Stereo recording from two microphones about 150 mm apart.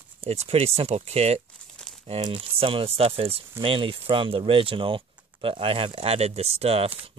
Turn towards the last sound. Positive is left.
turn(degrees=-40)  # may be behind; listen again after turning